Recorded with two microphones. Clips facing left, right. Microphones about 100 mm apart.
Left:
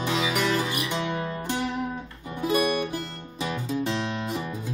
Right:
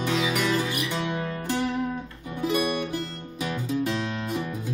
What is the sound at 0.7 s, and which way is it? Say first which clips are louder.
Music: even; 15° left (ahead or behind).